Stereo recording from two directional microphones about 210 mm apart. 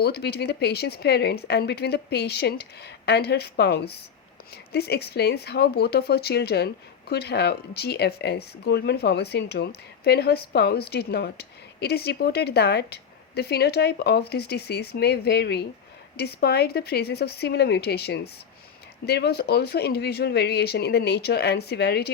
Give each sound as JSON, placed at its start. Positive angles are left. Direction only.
{"t": 0.0, "sound": "speech", "side_deg": 50}